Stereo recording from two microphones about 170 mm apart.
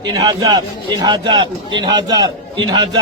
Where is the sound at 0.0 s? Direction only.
25° right (ahead or behind).